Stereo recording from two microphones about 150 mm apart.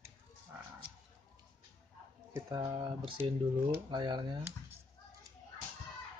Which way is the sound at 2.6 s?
35° right (ahead or behind).